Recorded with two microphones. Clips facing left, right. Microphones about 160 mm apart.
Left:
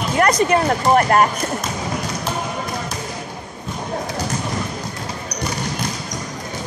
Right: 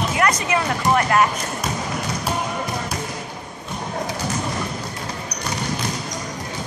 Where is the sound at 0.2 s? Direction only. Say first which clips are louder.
Left 6 dB; 40° left (ahead or behind).